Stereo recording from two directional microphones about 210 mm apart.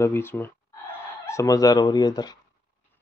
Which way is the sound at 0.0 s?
10° left (ahead or behind).